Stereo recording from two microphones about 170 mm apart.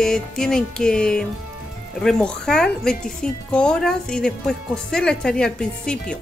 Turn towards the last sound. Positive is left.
turn(degrees=5)  # may be behind; listen again after turning